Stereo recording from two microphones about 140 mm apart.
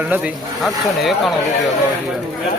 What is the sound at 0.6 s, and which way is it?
Speech, centre (ahead or behind).